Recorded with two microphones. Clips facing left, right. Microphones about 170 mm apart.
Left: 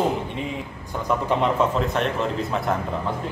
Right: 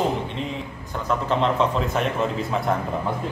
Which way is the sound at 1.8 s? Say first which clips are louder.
Even; centre (ahead or behind).